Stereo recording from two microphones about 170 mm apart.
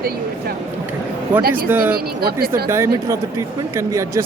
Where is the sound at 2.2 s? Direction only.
65° right (ahead or behind).